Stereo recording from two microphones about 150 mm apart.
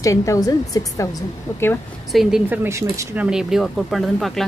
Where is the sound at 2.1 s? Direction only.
Centre (ahead or behind).